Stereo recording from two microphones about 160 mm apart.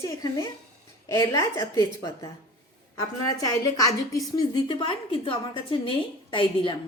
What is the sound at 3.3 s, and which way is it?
A woman's voice, 20° left (ahead or behind).